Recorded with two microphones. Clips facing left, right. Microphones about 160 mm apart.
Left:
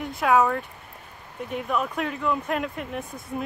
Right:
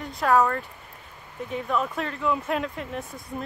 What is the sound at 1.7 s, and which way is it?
Speech, 5° left (ahead or behind).